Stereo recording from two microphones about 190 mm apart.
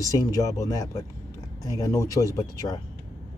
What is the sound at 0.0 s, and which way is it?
Speech, 15° left (ahead or behind).